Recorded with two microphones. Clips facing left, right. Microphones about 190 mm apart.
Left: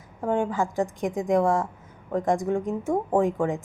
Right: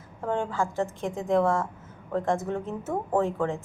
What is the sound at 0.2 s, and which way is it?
A woman's voice, 15° left (ahead or behind).